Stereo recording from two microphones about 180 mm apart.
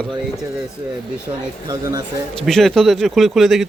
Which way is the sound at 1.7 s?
20° right (ahead or behind).